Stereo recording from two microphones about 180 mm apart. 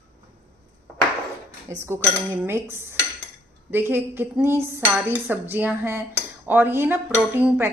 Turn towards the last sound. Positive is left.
turn(degrees=-10)  # may be behind; listen again after turning